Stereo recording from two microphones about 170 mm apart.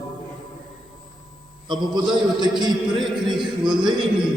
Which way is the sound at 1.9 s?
25° right (ahead or behind).